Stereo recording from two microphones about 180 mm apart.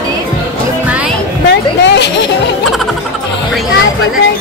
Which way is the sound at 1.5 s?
70° left (ahead or behind).